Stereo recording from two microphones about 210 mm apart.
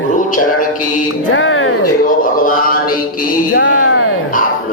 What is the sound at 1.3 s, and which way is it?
Music, 65° left (ahead or behind).